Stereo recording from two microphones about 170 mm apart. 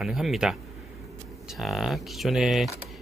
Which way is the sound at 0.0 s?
Centre (ahead or behind).